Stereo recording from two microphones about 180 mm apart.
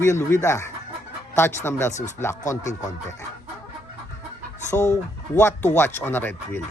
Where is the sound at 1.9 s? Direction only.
40° left (ahead or behind).